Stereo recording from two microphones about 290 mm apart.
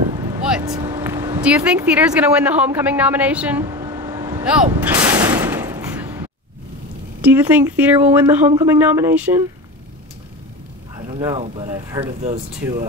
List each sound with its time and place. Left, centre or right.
0.1 s speech: centre
4.5 s artillery fire: centre
7.2 s speech: centre
11.1 s speech: centre